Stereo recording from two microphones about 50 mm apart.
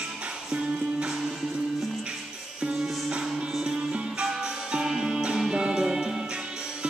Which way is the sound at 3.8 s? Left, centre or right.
Right.